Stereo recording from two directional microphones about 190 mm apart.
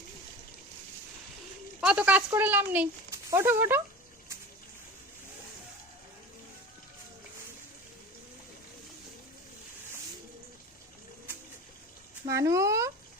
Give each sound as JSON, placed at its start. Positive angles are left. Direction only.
{"t": 1.8, "sound": "a woman's voice", "side_deg": -5}
{"t": 12.3, "sound": "a woman's voice", "side_deg": -15}